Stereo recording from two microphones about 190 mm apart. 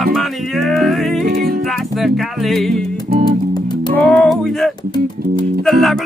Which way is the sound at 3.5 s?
25° left (ahead or behind).